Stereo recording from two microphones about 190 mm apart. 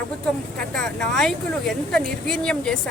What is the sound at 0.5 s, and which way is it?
Speech, 5° left (ahead or behind).